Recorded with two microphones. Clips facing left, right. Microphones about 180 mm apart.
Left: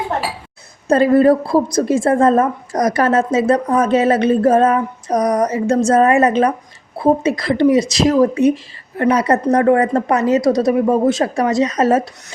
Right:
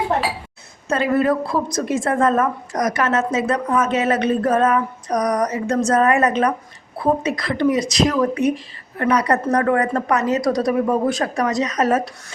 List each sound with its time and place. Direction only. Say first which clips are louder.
0.9 s a woman's voice: left 7 dB; 35° left (ahead or behind)